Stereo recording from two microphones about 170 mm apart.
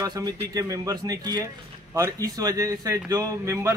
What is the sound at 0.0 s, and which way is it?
A man's voice, 20° right (ahead or behind).